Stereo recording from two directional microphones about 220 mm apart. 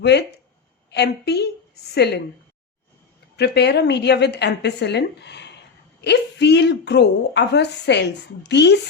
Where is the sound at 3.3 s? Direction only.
50° left (ahead or behind).